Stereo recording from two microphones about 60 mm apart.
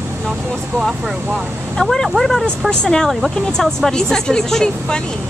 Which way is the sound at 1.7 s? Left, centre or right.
Centre.